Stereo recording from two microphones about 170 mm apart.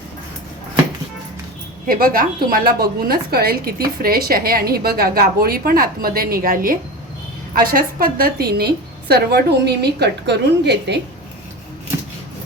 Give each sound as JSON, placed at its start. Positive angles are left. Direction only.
{"t": 1.9, "sound": "a woman's voice", "side_deg": -60}